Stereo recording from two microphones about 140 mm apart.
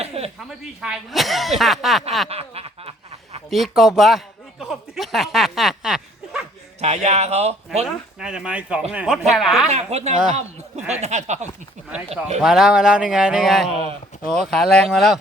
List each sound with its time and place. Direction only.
0.0 s a sound: 45° right (ahead or behind)
0.3 s speech: centre (ahead or behind)
2.3 s snicker: 45° right (ahead or behind)
3.5 s speech: centre (ahead or behind)
4.6 s a sound: centre (ahead or behind)
6.7 s speech: 50° right (ahead or behind)
7.9 s speech: 5° right (ahead or behind)
9.6 s speech: 50° right (ahead or behind)
11.0 s a sound: 55° right (ahead or behind)
11.9 s speech: 10° right (ahead or behind)